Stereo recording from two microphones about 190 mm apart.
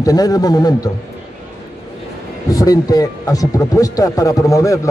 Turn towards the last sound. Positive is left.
turn(degrees=15)  # may be behind; listen again after turning